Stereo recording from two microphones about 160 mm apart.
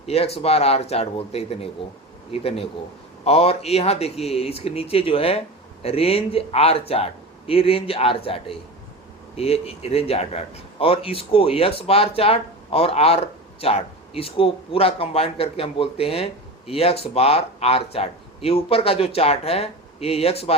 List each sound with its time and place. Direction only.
0.1 s a man's voice: 40° left (ahead or behind)